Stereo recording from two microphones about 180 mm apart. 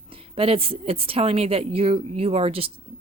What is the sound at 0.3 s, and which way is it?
Speech, 30° right (ahead or behind).